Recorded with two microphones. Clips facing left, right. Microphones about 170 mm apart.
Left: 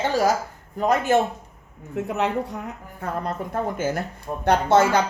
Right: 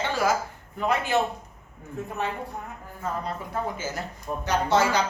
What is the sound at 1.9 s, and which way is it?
A woman's voice, 80° left.